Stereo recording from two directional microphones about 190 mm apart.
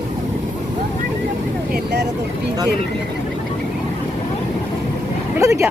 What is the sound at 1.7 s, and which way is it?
Vehicle, 60° right (ahead or behind).